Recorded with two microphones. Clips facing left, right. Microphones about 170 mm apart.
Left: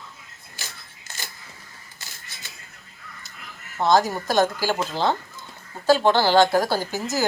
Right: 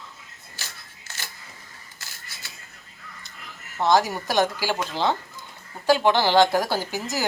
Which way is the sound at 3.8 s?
15° right (ahead or behind).